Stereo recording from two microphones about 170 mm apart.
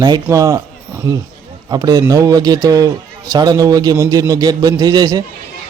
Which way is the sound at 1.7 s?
20° right (ahead or behind).